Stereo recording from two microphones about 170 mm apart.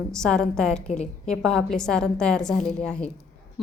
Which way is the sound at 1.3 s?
5° left (ahead or behind).